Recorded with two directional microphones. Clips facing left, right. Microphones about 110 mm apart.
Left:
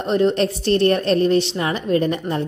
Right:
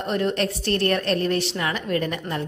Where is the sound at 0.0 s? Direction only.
25° left (ahead or behind).